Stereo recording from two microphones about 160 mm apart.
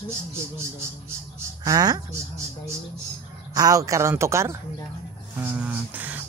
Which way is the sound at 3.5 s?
20° right (ahead or behind).